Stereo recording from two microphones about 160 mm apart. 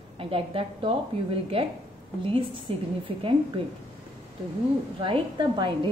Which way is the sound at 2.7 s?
35° right (ahead or behind).